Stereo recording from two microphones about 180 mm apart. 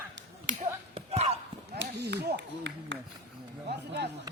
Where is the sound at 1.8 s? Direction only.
65° right (ahead or behind).